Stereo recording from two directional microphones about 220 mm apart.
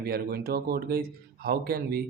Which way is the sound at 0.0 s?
45° right (ahead or behind).